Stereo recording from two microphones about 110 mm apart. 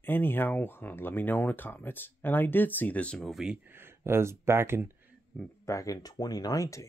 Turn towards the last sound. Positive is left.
turn(degrees=30)  # may be behind; listen again after turning